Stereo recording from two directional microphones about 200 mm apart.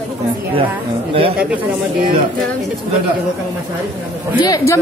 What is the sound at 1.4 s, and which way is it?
Speech, 5° right (ahead or behind).